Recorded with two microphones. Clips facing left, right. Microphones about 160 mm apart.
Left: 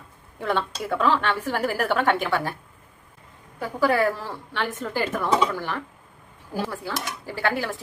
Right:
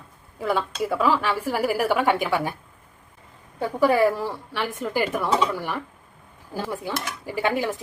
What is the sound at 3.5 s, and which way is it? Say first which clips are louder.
Speech: right 2 dB; 20° right (ahead or behind).